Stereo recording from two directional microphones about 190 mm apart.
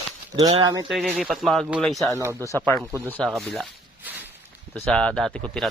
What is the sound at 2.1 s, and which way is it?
Speech, 15° right (ahead or behind).